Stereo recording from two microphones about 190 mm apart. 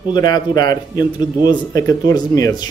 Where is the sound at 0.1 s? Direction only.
20° left (ahead or behind).